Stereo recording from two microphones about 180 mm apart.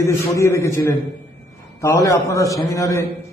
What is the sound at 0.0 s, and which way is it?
A man's voice, 15° left (ahead or behind).